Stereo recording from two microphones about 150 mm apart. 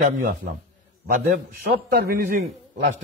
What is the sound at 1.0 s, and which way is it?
A man's voice, 65° right (ahead or behind).